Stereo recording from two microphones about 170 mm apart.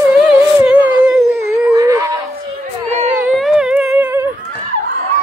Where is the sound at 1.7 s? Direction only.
20° right (ahead or behind).